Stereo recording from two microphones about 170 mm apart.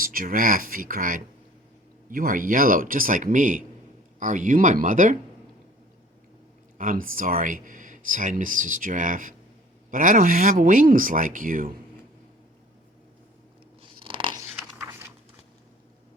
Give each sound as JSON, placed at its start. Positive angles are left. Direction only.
{"t": 0.0, "sound": "speech", "side_deg": -55}
{"t": 6.7, "sound": "speech", "side_deg": -55}
{"t": 13.8, "sound": "crunch", "side_deg": -30}